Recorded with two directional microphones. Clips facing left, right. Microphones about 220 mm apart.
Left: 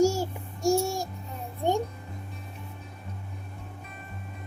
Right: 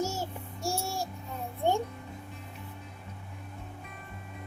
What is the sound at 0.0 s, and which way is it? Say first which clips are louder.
Child singing: left 10 dB; 10° left (ahead or behind).